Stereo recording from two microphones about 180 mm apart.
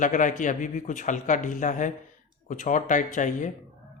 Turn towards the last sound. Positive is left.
turn(degrees=45)  # may be behind; listen again after turning